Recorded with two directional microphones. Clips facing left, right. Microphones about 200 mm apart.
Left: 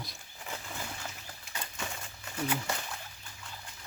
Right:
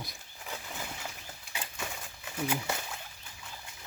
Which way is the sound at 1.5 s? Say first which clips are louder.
Even; 5° right (ahead or behind).